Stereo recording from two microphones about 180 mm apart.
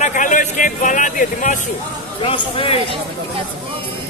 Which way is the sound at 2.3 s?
30° left (ahead or behind).